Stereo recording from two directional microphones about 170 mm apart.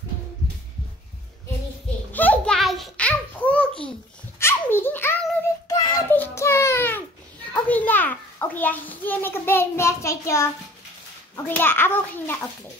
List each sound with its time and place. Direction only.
2.1 s babbling: 10° left (ahead or behind)
4.4 s a sound: 15° left (ahead or behind)
5.7 s child singing: 20° left (ahead or behind)
6.1 s baby cry: 15° left (ahead or behind)
7.5 s a sound: 10° left (ahead or behind)
11.3 s a child's voice: 10° left (ahead or behind)